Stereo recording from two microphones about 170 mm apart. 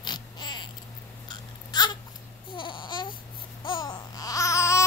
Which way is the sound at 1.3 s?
25° left (ahead or behind).